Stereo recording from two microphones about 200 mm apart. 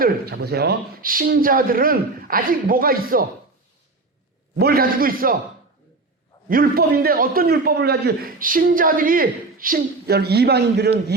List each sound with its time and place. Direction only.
0.0 s a man's voice: 50° right (ahead or behind)
4.5 s a man's voice: 50° right (ahead or behind)
6.5 s a man's voice: 50° right (ahead or behind)